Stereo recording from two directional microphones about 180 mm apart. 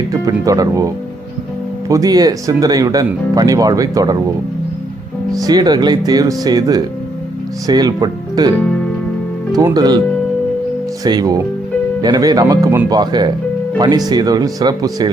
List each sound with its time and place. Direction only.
0.3 s speech: 20° right (ahead or behind)
1.9 s speech: 20° right (ahead or behind)
5.3 s speech: 20° right (ahead or behind)
11.0 s speech: 20° right (ahead or behind)